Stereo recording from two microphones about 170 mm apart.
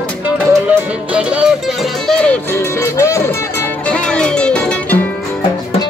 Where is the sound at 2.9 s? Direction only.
15° left (ahead or behind).